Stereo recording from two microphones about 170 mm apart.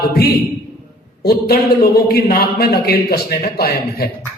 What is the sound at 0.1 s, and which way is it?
Speech, 65° left (ahead or behind).